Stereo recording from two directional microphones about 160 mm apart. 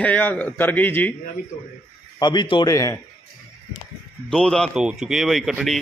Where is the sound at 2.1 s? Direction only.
25° left (ahead or behind).